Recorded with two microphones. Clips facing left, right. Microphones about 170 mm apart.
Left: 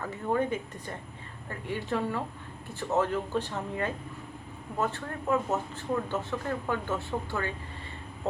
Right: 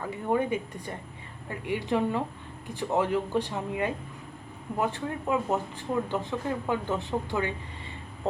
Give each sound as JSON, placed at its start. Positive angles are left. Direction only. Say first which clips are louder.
{"t": 0.0, "sound": "speech", "louder": "right 1 dB", "side_deg": -15}